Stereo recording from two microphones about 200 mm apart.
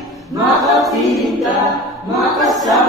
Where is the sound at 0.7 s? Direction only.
Centre (ahead or behind).